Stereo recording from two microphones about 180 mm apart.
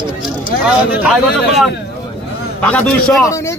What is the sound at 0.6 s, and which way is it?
Speech, 10° right (ahead or behind).